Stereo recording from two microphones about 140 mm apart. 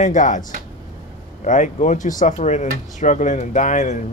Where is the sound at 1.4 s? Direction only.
60° left (ahead or behind).